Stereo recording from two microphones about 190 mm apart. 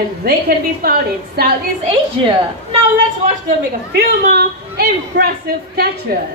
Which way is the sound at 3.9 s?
55° right (ahead or behind).